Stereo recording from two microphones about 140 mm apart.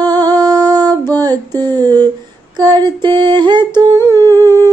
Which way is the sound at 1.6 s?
30° right (ahead or behind).